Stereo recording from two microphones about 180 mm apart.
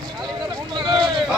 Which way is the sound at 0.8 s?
25° right (ahead or behind).